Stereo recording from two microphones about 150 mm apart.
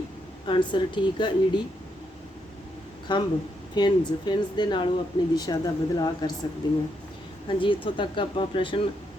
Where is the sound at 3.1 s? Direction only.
30° left (ahead or behind).